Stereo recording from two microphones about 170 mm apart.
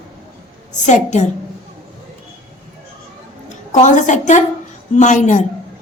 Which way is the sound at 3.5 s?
45° left (ahead or behind).